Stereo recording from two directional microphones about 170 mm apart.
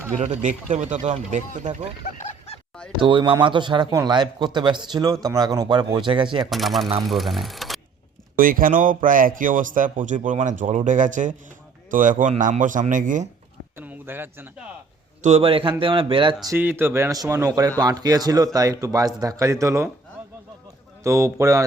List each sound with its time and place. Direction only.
0.2 s a man's voice: 45° right (ahead or behind)
2.1 s a sound: 45° left (ahead or behind)
3.0 s speech: 30° right (ahead or behind)
6.4 s speech: centre (ahead or behind)
8.4 s a man's voice: 55° right (ahead or behind)
13.7 s speech: 10° right (ahead or behind)
15.2 s a man's voice: 40° right (ahead or behind)
16.5 s speech: 15° right (ahead or behind)
21.0 s a man's voice: 15° right (ahead or behind)